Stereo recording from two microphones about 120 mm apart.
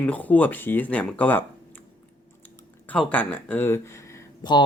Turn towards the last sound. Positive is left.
turn(degrees=40)  # may be behind; listen again after turning